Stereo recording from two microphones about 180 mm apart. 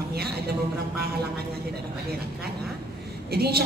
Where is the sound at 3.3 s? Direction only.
60° right (ahead or behind).